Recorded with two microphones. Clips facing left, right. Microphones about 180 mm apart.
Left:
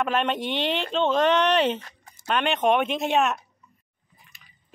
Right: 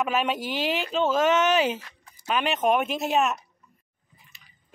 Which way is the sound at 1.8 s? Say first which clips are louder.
Left 2 dB; 40° left (ahead or behind).